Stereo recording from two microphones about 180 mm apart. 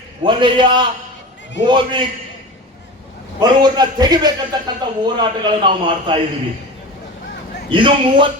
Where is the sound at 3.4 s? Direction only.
20° right (ahead or behind).